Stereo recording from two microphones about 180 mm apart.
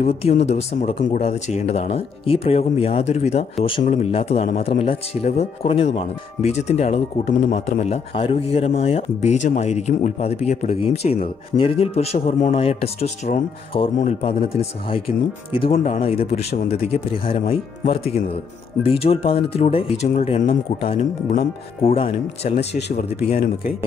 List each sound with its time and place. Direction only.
0.0 s speech: 35° left (ahead or behind)
15.6 s speech: 45° left (ahead or behind)